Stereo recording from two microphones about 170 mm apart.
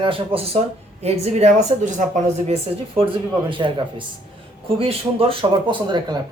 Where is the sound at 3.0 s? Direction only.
30° right (ahead or behind).